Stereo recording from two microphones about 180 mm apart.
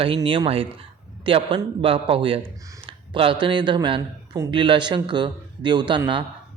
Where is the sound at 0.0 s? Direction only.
30° right (ahead or behind).